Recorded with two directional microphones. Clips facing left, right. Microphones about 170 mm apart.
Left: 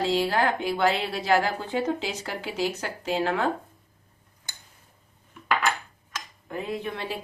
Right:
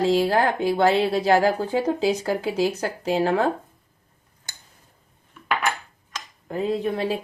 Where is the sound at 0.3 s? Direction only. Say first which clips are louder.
Right 4 dB; 35° right (ahead or behind).